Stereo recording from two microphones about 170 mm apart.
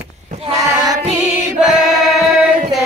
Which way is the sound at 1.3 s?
5° right (ahead or behind).